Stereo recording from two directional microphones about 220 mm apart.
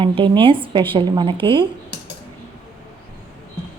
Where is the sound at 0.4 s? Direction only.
25° right (ahead or behind).